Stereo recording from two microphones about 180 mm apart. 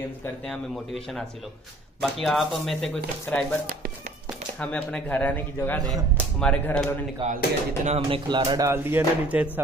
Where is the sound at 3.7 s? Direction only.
55° right (ahead or behind).